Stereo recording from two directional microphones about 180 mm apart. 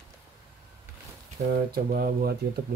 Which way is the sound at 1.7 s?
55° right (ahead or behind).